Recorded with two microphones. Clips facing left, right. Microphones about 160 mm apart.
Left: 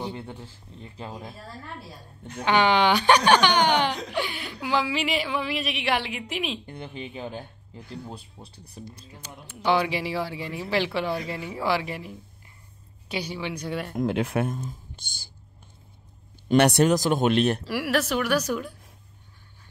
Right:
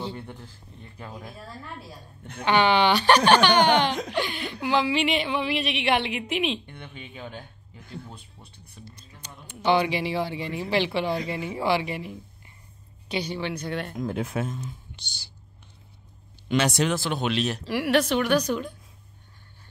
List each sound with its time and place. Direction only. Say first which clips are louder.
0.0 s speech: left 1 dB; 15° left (ahead or behind)
0.9 s speech: left 2 dB; 25° left (ahead or behind)
2.4 s speech: even; 10° left (ahead or behind)
6.6 s speech: left 6 dB; 35° left (ahead or behind)
9.2 s speech: right 1 dB; 5° left (ahead or behind)
13.9 s speech: left 7 dB; 75° left (ahead or behind); by 14.6 s 60° left (ahead or behind)
15.0 s speech: even; 50° left (ahead or behind)
16.5 s speech: left 5 dB; 60° left (ahead or behind)
16.8 s speech: left 5 dB; 45° left (ahead or behind)
17.6 s speech: right 3 dB; 5° left (ahead or behind)